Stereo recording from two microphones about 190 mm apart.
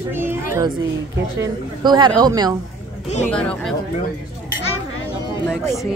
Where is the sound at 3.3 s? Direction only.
5° left (ahead or behind).